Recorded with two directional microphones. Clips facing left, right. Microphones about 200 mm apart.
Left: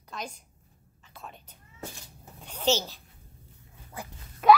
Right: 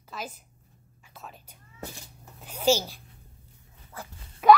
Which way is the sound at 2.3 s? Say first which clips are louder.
Right 3 dB; 10° right (ahead or behind).